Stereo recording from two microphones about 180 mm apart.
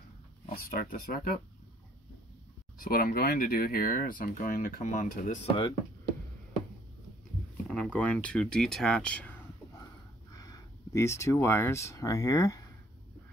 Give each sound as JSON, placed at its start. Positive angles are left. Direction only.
{"t": 0.5, "sound": "speech", "side_deg": 55}
{"t": 2.8, "sound": "speech", "side_deg": 55}
{"t": 7.7, "sound": "speech", "side_deg": 5}
{"t": 10.3, "sound": "speech", "side_deg": 20}